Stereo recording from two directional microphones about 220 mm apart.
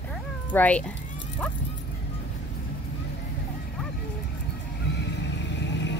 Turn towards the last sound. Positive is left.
turn(degrees=55)  # may be behind; listen again after turning